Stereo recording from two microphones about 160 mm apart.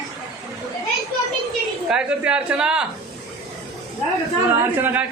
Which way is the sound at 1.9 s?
5° right (ahead or behind).